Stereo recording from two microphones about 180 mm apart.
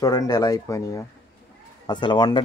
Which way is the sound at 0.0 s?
20° left (ahead or behind).